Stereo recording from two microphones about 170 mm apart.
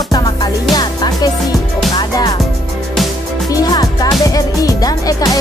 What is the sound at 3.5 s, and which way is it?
Speech, 20° left (ahead or behind).